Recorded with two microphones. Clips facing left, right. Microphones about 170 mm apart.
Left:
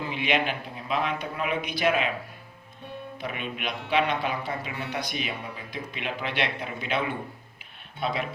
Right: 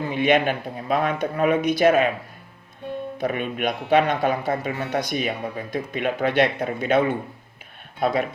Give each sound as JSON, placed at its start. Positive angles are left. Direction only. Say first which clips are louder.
{"t": 0.0, "sound": "a man's voice", "louder": "right 7 dB", "side_deg": -45}
{"t": 3.2, "sound": "a man's voice", "louder": "right 9 dB", "side_deg": -50}